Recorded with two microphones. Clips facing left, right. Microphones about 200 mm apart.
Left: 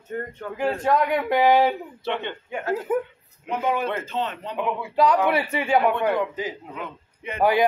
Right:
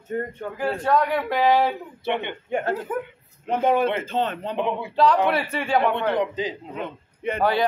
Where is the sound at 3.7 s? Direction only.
25° right (ahead or behind).